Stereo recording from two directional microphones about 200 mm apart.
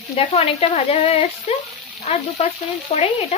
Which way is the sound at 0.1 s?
30° left (ahead or behind).